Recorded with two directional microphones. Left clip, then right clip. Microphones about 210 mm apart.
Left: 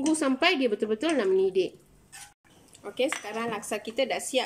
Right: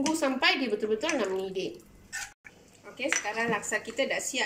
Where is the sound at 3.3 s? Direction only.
45° left (ahead or behind).